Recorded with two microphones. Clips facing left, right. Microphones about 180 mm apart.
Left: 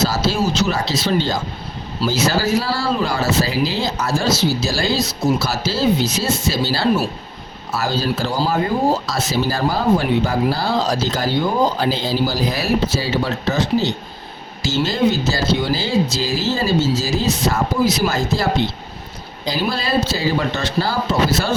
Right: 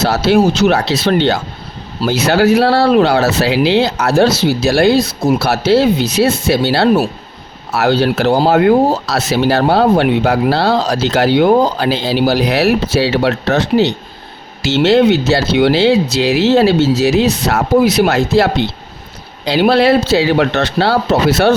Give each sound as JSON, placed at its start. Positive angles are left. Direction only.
{"t": 0.0, "sound": "speech", "side_deg": -65}